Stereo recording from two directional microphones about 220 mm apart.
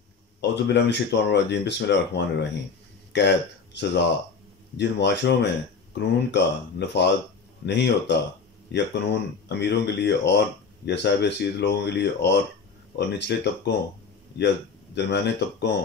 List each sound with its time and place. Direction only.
0.4 s speech: 50° left (ahead or behind)